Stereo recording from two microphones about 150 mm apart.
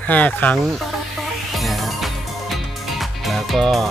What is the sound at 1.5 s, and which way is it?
Music, centre (ahead or behind).